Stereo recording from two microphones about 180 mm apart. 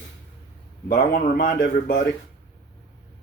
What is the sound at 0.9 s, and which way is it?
A man's voice, 55° left (ahead or behind).